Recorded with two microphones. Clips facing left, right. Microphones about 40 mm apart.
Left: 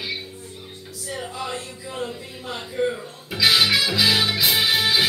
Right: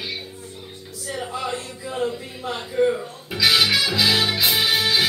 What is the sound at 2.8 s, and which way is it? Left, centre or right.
Music, centre.